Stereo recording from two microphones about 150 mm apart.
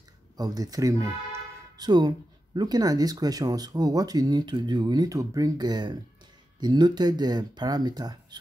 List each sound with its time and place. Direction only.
0.4 s speech: 25° right (ahead or behind)